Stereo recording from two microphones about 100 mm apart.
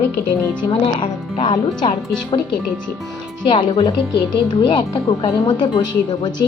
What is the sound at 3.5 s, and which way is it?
Speech, 60° left (ahead or behind).